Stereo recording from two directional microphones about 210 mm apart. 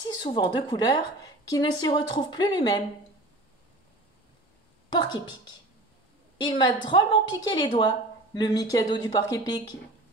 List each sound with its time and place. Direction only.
0.2 s a woman's voice: 20° left (ahead or behind)
4.9 s a woman's voice: 20° left (ahead or behind)
6.6 s a woman's voice: 20° left (ahead or behind)